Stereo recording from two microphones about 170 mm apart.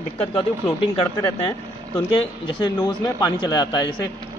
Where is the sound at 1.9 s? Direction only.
25° left (ahead or behind).